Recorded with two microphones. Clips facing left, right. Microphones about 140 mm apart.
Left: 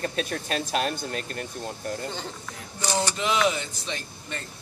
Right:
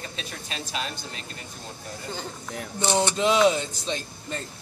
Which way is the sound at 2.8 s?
25° right (ahead or behind).